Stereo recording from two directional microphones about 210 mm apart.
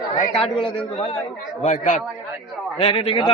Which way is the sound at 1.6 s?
35° left (ahead or behind).